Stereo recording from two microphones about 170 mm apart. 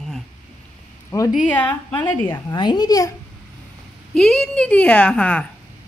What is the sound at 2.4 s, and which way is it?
Speech, 25° left (ahead or behind).